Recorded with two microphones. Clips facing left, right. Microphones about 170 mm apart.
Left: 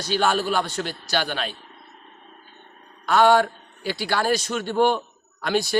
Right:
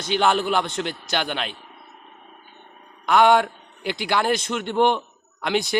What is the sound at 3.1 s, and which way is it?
A man's voice, 15° right (ahead or behind).